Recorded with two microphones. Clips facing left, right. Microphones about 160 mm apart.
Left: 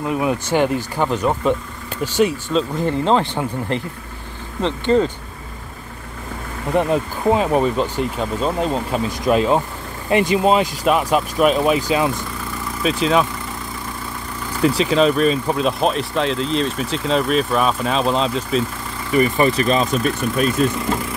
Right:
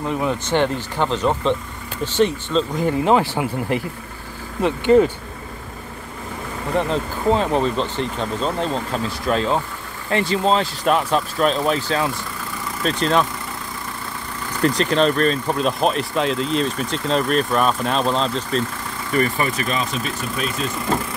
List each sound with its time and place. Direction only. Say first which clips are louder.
0.0 s speech: left 2 dB; 10° left (ahead or behind)
2.8 s speech: right 2 dB; 10° right (ahead or behind)
6.9 s speech: left 2 dB; 10° left (ahead or behind)
14.6 s speech: left 2 dB; 5° left (ahead or behind)
19.3 s speech: left 6 dB; 30° left (ahead or behind)
20.6 s speech: left 8 dB; 55° left (ahead or behind)